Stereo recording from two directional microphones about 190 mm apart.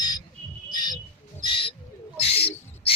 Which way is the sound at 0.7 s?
25° left (ahead or behind).